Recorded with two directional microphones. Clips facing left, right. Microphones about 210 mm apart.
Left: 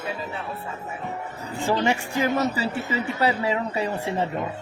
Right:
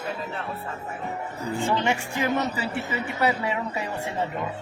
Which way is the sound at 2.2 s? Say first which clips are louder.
Left 4 dB; 30° left (ahead or behind).